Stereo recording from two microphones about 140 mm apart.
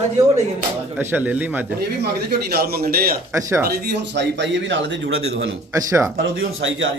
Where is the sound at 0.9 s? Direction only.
10° right (ahead or behind).